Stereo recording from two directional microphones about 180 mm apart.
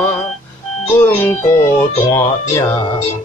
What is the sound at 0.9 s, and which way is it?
Music, 15° left (ahead or behind).